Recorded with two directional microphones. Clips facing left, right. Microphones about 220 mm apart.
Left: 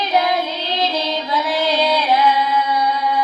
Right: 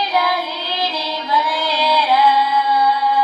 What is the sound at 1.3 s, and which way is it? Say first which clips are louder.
Music: left 1 dB; 20° left (ahead or behind).